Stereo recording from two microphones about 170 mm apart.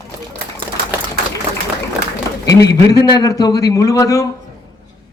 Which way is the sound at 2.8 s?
20° left (ahead or behind).